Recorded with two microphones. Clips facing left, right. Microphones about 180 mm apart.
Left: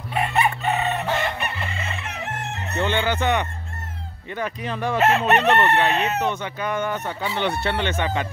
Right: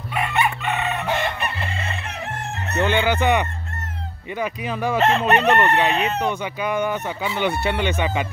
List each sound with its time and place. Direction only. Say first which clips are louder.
0.1 s chicken: left 1 dB; 35° left (ahead or behind)
2.8 s speech: right 3 dB; 10° right (ahead or behind)
4.9 s chicken: even; 5° left (ahead or behind)
5.8 s speech: right 1 dB; 10° right (ahead or behind)